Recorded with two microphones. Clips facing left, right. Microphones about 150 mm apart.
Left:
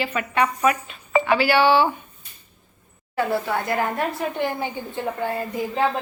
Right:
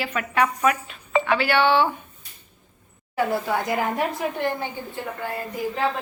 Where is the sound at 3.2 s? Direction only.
10° right (ahead or behind).